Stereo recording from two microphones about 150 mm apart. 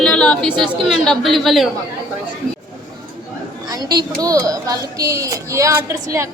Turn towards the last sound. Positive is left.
turn(degrees=-20)  # may be behind; listen again after turning